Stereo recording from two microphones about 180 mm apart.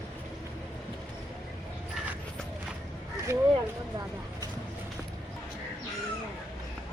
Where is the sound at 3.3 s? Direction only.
15° right (ahead or behind).